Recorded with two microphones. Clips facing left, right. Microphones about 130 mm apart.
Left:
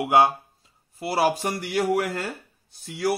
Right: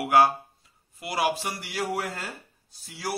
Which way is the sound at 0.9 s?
35° left (ahead or behind).